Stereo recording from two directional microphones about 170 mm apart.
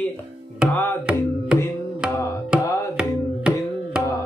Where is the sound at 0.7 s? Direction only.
10° left (ahead or behind).